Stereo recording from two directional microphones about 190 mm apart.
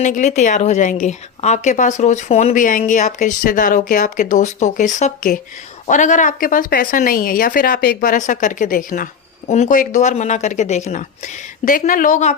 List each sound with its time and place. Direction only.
0.0 s speech: 40° left (ahead or behind)